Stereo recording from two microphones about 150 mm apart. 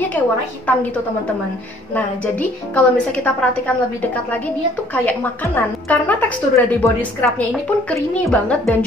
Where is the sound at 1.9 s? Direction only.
10° left (ahead or behind).